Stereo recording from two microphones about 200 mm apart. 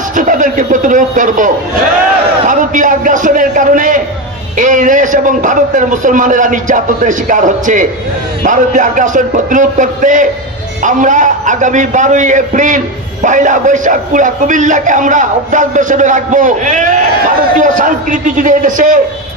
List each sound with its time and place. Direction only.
0.1 s a man's voice: 40° right (ahead or behind)